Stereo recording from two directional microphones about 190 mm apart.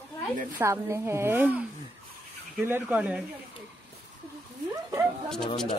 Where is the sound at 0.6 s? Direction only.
15° right (ahead or behind).